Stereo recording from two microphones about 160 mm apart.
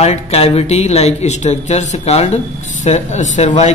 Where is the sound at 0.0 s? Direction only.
40° left (ahead or behind).